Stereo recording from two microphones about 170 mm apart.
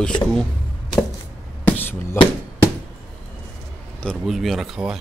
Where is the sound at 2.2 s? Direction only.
15° left (ahead or behind).